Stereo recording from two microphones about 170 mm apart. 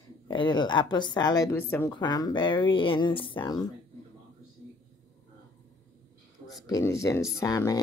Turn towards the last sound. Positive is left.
turn(degrees=20)  # may be behind; listen again after turning